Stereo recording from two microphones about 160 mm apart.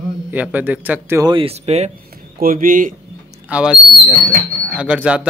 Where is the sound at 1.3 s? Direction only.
40° right (ahead or behind).